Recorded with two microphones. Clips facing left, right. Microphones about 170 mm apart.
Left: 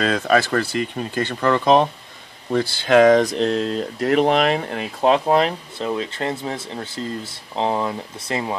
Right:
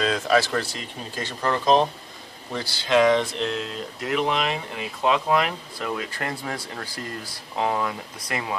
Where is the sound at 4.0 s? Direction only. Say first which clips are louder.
Left 7 dB; 55° left (ahead or behind).